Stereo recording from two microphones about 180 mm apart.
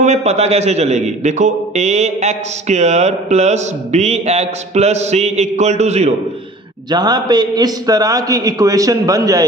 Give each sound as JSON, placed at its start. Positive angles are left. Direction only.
{"t": 0.0, "sound": "a man's voice", "side_deg": -40}
{"t": 6.9, "sound": "a man's voice", "side_deg": -25}